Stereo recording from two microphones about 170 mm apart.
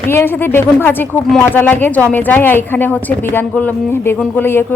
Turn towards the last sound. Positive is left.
turn(degrees=10)  # may be behind; listen again after turning